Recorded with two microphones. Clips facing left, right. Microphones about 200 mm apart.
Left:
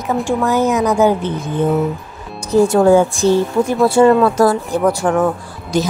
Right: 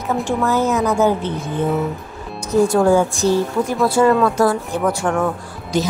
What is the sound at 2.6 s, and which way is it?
A woman's voice, 25° left (ahead or behind).